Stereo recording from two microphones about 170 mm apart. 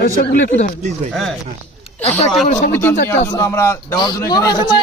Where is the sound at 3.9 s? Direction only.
25° left (ahead or behind).